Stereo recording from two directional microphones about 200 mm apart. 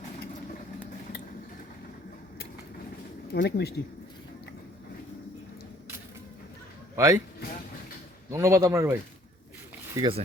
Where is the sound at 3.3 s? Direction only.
55° left (ahead or behind).